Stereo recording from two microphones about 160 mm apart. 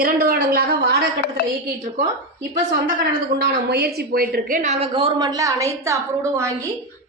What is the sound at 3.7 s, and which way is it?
Speech, 85° right.